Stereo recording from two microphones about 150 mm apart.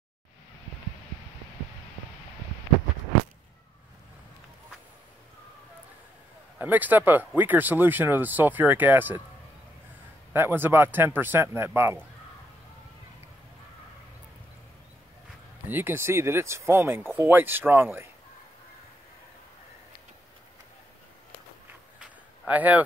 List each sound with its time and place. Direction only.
6.6 s speech: 10° right (ahead or behind)
10.3 s speech: 15° right (ahead or behind)
15.6 s speech: 15° right (ahead or behind)
22.5 s speech: 10° right (ahead or behind)